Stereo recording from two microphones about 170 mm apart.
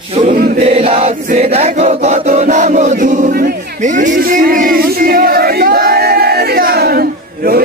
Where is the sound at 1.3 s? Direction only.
35° right (ahead or behind).